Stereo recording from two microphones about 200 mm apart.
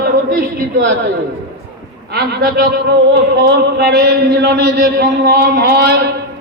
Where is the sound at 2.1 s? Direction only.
50° right (ahead or behind).